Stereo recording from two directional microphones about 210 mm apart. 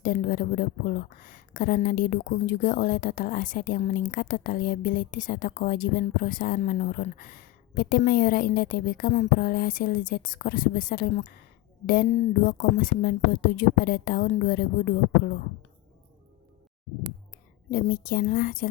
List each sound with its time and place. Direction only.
0.0 s a woman's voice: 40° left (ahead or behind)
17.7 s speech: 45° left (ahead or behind)